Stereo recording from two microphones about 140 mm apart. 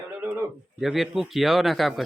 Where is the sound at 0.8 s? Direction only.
Centre (ahead or behind).